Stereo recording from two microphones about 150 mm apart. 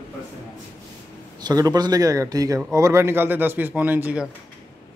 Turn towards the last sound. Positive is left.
turn(degrees=-10)  # may be behind; listen again after turning